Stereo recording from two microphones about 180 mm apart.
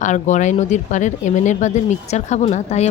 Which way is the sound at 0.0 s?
40° left (ahead or behind).